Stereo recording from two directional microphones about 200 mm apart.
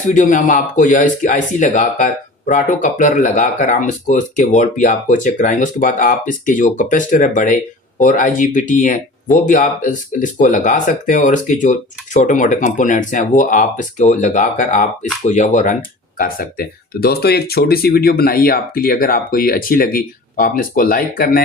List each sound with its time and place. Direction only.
0.1 s speech: 40° left (ahead or behind)